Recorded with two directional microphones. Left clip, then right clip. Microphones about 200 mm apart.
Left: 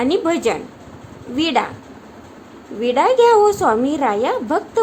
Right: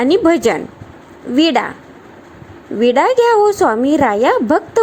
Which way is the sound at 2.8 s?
30° right (ahead or behind).